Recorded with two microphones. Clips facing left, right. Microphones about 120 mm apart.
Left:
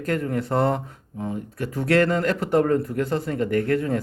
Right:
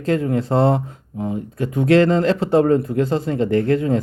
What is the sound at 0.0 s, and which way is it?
A man's voice, 25° right (ahead or behind).